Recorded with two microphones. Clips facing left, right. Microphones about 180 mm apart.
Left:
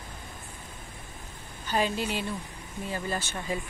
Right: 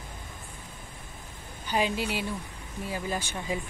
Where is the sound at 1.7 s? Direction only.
15° right (ahead or behind).